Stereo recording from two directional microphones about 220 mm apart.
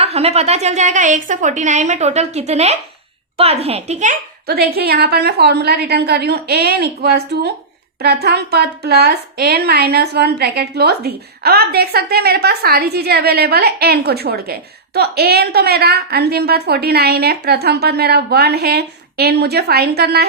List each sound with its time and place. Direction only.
0.0 s a woman's voice: 30° right (ahead or behind); by 20.2 s 45° right (ahead or behind)